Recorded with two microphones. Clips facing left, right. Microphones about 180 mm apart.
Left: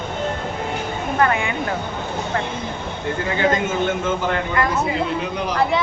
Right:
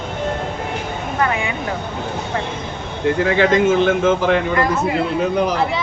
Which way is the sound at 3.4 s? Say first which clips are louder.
Right 5 dB; 90° right.